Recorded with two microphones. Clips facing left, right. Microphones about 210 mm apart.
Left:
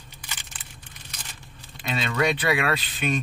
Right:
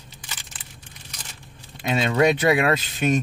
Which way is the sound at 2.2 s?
45° right (ahead or behind).